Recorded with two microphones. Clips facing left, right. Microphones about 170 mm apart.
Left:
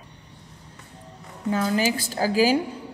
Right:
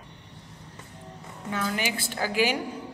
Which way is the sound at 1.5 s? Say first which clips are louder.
Left 7 dB; 35° left (ahead or behind).